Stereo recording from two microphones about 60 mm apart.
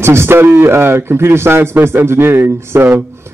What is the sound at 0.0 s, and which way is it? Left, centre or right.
A man's voice, right.